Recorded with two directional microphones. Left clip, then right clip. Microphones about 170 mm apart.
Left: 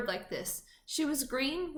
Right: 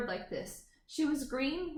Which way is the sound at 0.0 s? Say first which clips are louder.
Left 2 dB; 15° left (ahead or behind).